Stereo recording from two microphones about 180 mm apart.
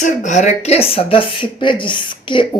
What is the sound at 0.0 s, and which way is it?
Speech, 45° left (ahead or behind).